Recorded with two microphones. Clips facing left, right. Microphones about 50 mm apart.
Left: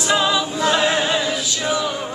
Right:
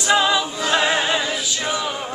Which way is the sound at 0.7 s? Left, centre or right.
Centre.